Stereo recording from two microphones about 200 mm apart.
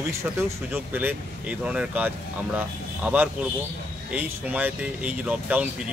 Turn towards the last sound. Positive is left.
turn(degrees=-5)  # may be behind; listen again after turning